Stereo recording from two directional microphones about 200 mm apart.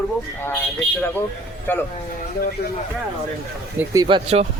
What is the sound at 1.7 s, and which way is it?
Speech, 10° left (ahead or behind).